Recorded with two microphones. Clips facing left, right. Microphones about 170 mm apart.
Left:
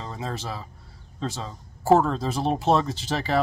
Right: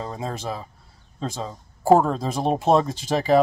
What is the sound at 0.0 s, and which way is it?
Speech, 15° right (ahead or behind).